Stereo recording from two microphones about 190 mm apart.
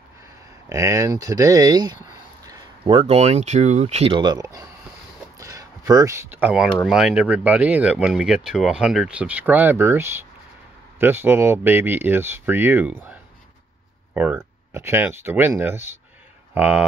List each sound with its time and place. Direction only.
0.7 s speech: 15° right (ahead or behind)